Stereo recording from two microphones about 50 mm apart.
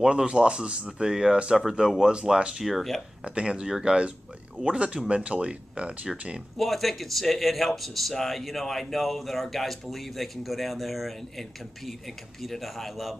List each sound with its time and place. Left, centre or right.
0.0 s speech: centre
2.6 s speech: centre
3.3 s speech: right
6.5 s speech: centre